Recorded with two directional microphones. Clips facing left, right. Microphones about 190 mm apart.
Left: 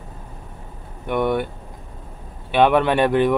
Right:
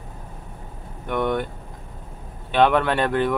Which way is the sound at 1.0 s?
10° left (ahead or behind).